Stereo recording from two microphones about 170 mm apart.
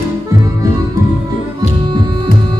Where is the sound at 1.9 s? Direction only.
25° right (ahead or behind).